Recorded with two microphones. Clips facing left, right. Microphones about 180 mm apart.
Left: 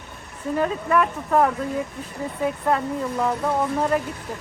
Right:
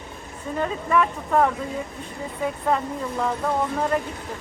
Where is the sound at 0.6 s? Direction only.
5° left (ahead or behind).